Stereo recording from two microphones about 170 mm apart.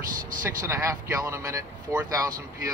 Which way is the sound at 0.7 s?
15° right (ahead or behind).